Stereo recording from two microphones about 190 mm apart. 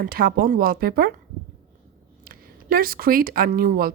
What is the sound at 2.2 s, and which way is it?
Speech, 50° right (ahead or behind).